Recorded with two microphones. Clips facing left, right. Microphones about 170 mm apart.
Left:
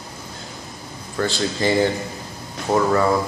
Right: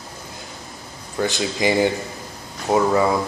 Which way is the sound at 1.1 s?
15° right (ahead or behind).